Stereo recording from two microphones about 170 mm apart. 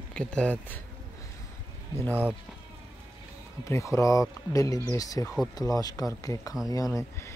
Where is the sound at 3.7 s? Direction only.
20° left (ahead or behind).